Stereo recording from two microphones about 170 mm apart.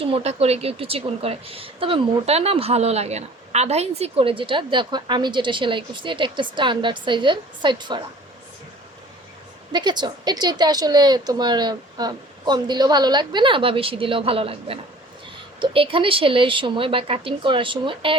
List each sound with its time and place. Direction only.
0.0 s a woman's voice: 35° right (ahead or behind)
9.7 s a woman's voice: 25° right (ahead or behind)